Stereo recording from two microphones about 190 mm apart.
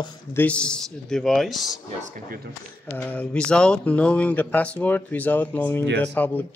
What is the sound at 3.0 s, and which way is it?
Speech, 10° left (ahead or behind).